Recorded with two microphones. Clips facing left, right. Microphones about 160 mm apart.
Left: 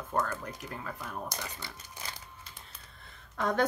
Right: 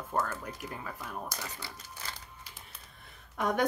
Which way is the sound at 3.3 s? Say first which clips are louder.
Left 1 dB; 10° right (ahead or behind).